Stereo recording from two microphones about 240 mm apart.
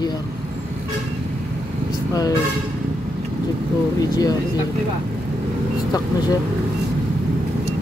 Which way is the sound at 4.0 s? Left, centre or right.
Centre.